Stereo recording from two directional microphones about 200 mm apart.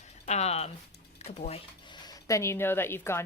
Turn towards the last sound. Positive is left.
turn(degrees=10)  # may be behind; listen again after turning